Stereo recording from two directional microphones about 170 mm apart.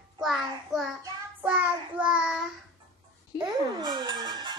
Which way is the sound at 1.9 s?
5° right (ahead or behind).